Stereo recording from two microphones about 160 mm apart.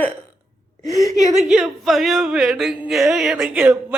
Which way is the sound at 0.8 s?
20° left (ahead or behind).